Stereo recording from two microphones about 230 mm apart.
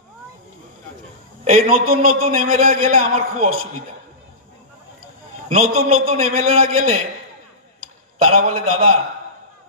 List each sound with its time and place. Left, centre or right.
1.4 s a man's voice: right
5.5 s a man's voice: right
8.3 s a man's voice: right